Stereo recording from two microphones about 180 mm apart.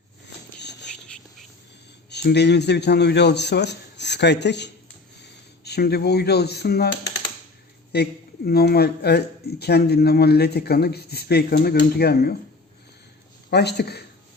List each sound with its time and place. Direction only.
0.6 s a sound: 70° left (ahead or behind)
0.9 s whispering: 5° left (ahead or behind)
2.0 s a man's voice: 70° left (ahead or behind)
7.9 s a man's voice: 65° left (ahead or behind)
13.5 s a man's voice: 65° left (ahead or behind)